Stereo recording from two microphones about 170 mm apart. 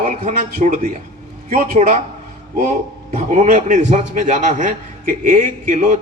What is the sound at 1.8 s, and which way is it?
Speech, 40° right (ahead or behind).